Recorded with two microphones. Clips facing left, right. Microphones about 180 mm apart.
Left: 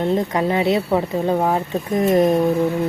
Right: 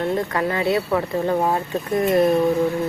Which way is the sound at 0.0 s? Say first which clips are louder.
Left 3 dB; 20° left (ahead or behind).